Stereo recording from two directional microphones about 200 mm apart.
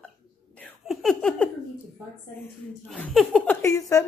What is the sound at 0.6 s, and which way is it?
Laughter, 5° left (ahead or behind).